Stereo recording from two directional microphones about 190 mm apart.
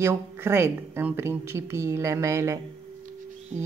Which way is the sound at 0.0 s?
15° right (ahead or behind).